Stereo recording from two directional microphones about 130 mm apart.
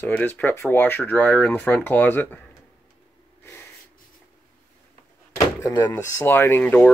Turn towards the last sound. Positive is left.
turn(degrees=10)  # may be behind; listen again after turning